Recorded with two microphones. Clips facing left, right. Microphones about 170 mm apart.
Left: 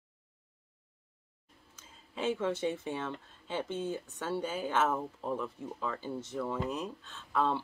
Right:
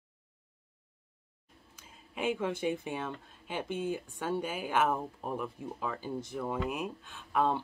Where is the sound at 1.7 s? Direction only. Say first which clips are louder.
Even; 15° right (ahead or behind).